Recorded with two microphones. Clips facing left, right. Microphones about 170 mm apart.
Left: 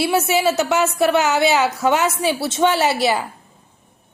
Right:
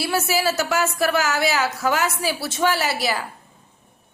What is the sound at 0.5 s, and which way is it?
A woman's voice, 20° left (ahead or behind).